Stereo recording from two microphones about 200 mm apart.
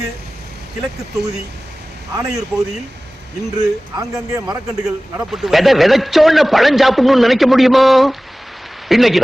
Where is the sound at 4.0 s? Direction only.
20° right (ahead or behind).